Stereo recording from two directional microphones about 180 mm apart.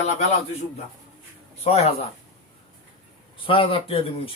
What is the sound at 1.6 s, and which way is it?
Speech, 35° left (ahead or behind).